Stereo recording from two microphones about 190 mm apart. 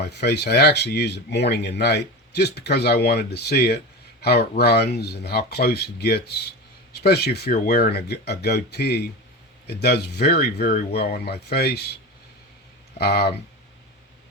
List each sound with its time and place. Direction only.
0.0 s speech: 60° left (ahead or behind)
13.0 s speech: 55° left (ahead or behind)